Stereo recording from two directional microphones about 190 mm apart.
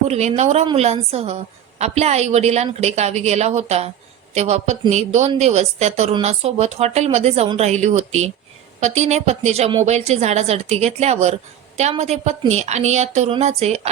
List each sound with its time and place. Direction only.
0.1 s a woman's voice: 35° right (ahead or behind)